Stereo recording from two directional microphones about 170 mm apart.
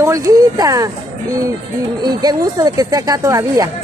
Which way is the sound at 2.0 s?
25° right (ahead or behind).